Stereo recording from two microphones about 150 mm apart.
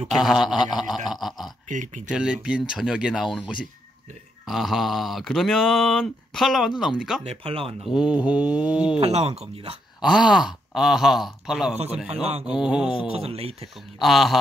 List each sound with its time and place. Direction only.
0.1 s speech: centre (ahead or behind)
1.7 s speech: 55° right (ahead or behind)
2.0 s speech: 5° right (ahead or behind)
7.2 s speech: 40° right (ahead or behind)
7.8 s mantra: 5° right (ahead or behind)
9.0 s speech: 45° right (ahead or behind)
10.0 s speech: 5° right (ahead or behind)
13.1 s speech: 40° right (ahead or behind)
14.0 s speech: centre (ahead or behind)